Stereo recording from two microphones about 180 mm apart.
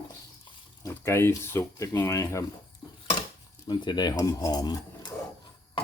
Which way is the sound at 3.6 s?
25° left (ahead or behind).